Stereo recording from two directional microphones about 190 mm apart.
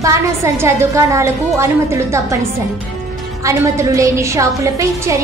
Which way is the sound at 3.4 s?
15° right (ahead or behind).